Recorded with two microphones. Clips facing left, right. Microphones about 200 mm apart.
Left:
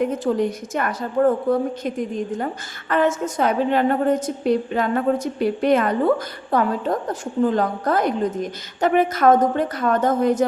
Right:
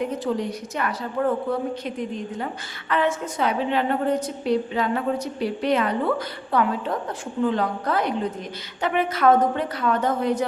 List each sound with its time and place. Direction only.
0.0 s a woman's voice: 50° left (ahead or behind)